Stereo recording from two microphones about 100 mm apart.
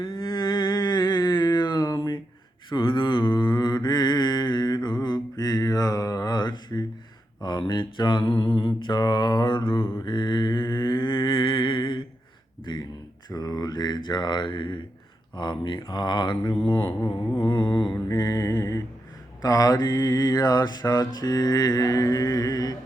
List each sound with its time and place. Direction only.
0.0 s mantra: 50° left (ahead or behind)
13.3 s a sound: 40° left (ahead or behind)
15.4 s mantra: 50° left (ahead or behind)
16.6 s speech: 60° left (ahead or behind)
17.3 s humming: 55° left (ahead or behind)
18.1 s mantra: 40° left (ahead or behind)